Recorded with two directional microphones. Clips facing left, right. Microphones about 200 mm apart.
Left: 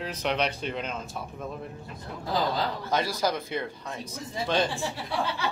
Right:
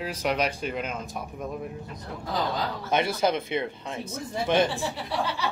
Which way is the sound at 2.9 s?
25° right (ahead or behind).